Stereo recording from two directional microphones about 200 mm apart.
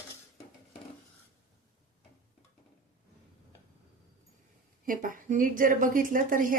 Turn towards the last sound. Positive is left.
turn(degrees=-40)  # may be behind; listen again after turning